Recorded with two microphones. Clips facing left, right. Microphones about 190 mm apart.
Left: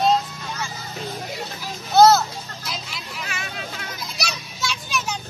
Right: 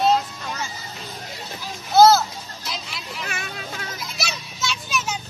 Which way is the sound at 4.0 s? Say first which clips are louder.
Even; centre (ahead or behind).